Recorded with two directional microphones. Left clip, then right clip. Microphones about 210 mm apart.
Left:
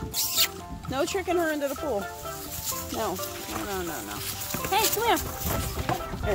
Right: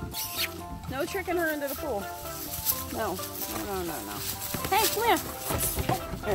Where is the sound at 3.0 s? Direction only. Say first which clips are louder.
Left 2 dB; centre (ahead or behind).